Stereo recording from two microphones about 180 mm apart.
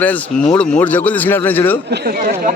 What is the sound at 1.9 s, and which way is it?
Speech, 60° right (ahead or behind).